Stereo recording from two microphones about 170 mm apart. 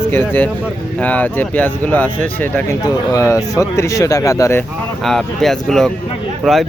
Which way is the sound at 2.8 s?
20° left (ahead or behind).